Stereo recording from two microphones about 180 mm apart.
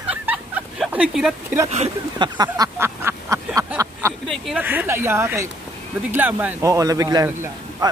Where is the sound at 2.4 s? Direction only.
15° right (ahead or behind).